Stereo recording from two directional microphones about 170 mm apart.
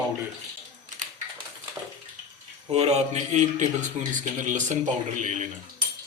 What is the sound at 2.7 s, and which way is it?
A man's voice, 40° right (ahead or behind).